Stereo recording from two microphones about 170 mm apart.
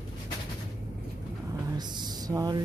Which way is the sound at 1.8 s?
25° right (ahead or behind).